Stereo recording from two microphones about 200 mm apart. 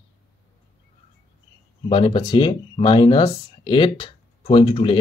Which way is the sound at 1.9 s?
25° left (ahead or behind).